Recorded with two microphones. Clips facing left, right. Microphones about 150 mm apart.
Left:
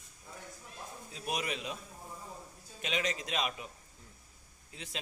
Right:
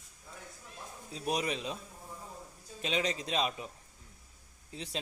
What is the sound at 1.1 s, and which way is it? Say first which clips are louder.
Speech: right 4 dB; 35° right (ahead or behind).